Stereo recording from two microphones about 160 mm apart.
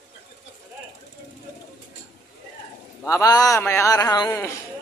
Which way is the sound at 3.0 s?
20° left (ahead or behind).